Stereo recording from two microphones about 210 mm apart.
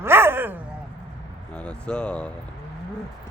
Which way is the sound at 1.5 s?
5° left (ahead or behind).